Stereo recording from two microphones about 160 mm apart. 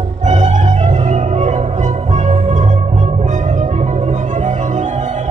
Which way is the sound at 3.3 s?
50° right (ahead or behind).